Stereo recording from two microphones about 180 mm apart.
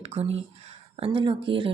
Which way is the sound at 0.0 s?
35° right (ahead or behind).